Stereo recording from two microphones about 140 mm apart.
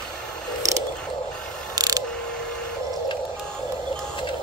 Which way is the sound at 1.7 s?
25° right (ahead or behind).